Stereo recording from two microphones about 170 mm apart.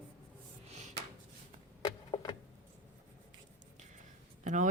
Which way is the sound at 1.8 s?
25° left (ahead or behind).